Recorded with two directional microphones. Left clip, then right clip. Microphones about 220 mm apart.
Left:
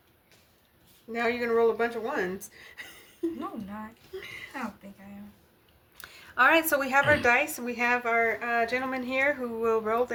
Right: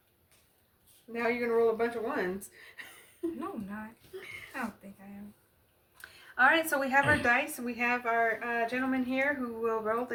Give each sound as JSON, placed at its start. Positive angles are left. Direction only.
{"t": 1.1, "sound": "speech", "side_deg": 35}
{"t": 6.0, "sound": "a woman's voice", "side_deg": 45}